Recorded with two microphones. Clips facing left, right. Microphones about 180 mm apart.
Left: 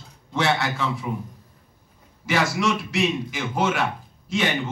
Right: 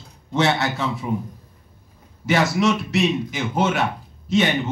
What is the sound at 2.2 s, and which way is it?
A man's voice, 20° right (ahead or behind).